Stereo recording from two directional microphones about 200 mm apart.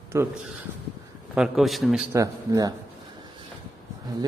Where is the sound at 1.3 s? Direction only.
5° right (ahead or behind).